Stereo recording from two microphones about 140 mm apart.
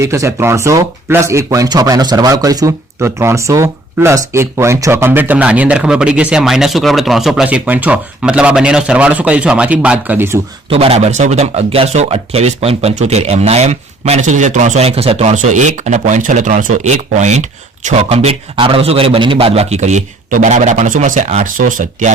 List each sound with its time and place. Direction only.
0.0 s speech: 20° right (ahead or behind)
10.7 s a man's voice: 45° right (ahead or behind); by 22.1 s 70° right (ahead or behind)